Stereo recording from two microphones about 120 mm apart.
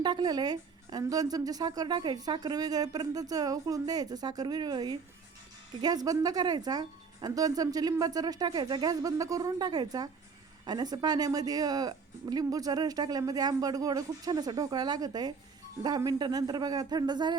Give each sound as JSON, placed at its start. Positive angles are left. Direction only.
{"t": 0.0, "sound": "a woman's voice", "side_deg": -35}